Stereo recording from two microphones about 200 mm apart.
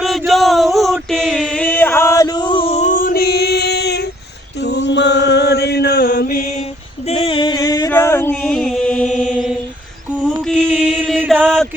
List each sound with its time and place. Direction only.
0.0 s a sound: centre (ahead or behind); by 4.0 s 55° left (ahead or behind)
4.6 s mantra: 60° left (ahead or behind)
7.1 s music: 25° left (ahead or behind); by 9.6 s centre (ahead or behind)
10.4 s chant: 5° left (ahead or behind)